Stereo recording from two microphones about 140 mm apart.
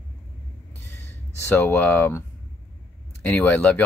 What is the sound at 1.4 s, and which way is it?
Speech, 15° left (ahead or behind).